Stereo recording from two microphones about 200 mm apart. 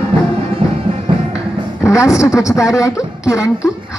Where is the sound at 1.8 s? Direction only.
15° left (ahead or behind).